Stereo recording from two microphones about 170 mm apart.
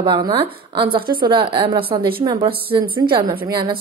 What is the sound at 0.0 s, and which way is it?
A woman's voice, 30° right (ahead or behind).